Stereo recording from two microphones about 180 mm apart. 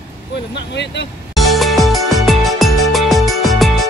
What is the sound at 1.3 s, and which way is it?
Music, centre (ahead or behind).